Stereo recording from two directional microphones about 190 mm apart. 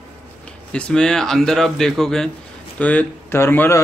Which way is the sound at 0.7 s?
5° left (ahead or behind).